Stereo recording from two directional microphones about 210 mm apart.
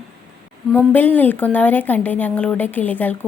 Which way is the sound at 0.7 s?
10° left (ahead or behind).